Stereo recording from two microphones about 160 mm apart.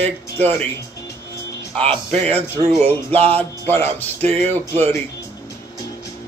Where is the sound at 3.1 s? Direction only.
40° right (ahead or behind).